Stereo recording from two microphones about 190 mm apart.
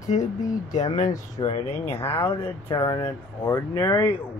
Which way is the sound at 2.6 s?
25° left (ahead or behind).